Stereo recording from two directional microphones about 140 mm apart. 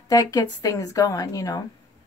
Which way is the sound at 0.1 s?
30° left (ahead or behind).